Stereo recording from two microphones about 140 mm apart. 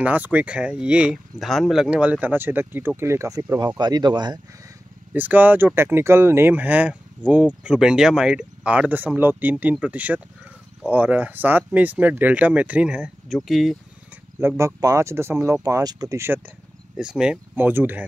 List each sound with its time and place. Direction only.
0.0 s speech: 10° right (ahead or behind); by 4.4 s 30° right (ahead or behind)
5.1 s speech: 10° right (ahead or behind)
14.6 s speech: 25° right (ahead or behind)
16.9 s speech: 5° right (ahead or behind)